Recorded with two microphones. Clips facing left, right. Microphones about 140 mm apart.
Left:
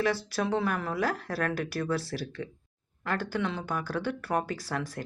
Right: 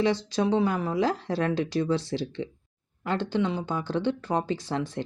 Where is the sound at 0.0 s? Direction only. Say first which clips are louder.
Right 4 dB; 20° right (ahead or behind).